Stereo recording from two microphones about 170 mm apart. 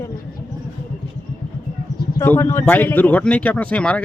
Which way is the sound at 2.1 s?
15° left (ahead or behind).